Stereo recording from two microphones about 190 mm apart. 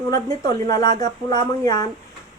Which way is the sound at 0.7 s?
20° left (ahead or behind).